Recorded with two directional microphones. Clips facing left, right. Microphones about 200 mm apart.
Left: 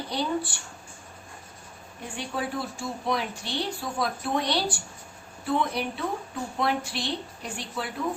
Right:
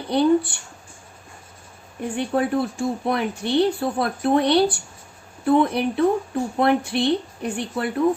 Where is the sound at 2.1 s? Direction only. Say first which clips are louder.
Right 10 dB; 60° right (ahead or behind).